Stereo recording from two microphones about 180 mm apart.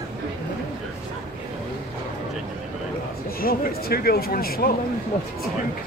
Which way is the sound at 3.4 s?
55° left (ahead or behind).